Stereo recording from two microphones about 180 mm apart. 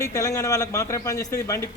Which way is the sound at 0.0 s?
20° left (ahead or behind).